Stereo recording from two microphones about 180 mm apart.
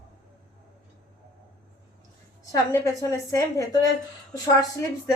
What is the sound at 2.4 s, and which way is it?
A woman's voice, 20° left (ahead or behind).